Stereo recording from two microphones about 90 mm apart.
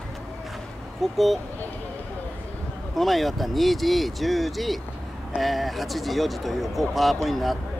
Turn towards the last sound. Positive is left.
turn(degrees=0)  # may be behind; listen again after turning